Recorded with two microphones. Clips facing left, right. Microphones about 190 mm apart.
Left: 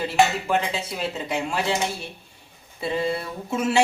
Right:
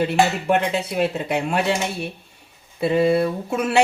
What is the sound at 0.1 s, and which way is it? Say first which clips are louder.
Speech: right 2 dB; 60° right (ahead or behind).